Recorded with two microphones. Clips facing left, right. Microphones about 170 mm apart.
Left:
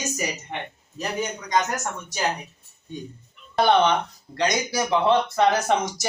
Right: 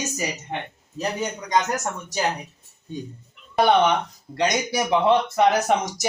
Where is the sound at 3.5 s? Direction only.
10° right (ahead or behind).